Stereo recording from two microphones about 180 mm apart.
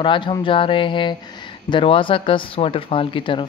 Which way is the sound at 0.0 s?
25° left (ahead or behind).